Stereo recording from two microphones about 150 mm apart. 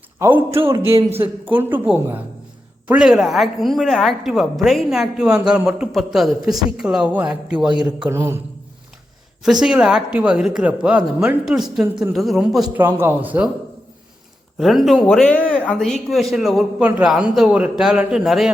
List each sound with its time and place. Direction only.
0.2 s speech: 15° right (ahead or behind)
2.8 s a woman's voice: 5° right (ahead or behind)
9.4 s a woman's voice: 5° right (ahead or behind)
12.8 s speech: 15° right (ahead or behind)
14.6 s a woman's voice: centre (ahead or behind)